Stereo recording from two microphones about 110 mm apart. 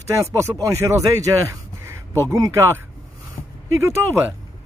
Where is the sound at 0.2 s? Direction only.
25° right (ahead or behind).